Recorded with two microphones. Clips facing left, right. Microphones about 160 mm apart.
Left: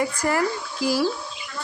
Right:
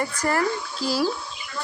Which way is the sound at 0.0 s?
10° left (ahead or behind).